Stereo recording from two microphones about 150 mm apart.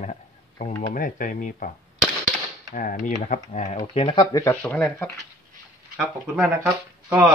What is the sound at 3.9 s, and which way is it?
Speech, 35° left (ahead or behind).